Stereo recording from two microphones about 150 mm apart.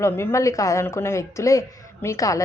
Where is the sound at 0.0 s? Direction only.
20° left (ahead or behind).